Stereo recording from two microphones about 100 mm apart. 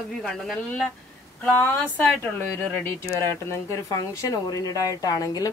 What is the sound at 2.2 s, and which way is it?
Speech, 20° left (ahead or behind).